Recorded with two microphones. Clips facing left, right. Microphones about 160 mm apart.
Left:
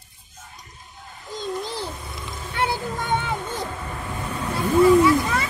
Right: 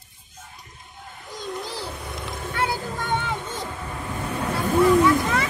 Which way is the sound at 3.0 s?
15° left (ahead or behind).